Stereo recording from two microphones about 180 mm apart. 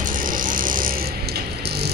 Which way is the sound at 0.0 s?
50° right (ahead or behind).